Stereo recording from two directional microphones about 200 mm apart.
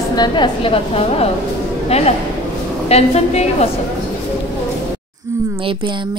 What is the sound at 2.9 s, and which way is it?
Speech, 30° left (ahead or behind).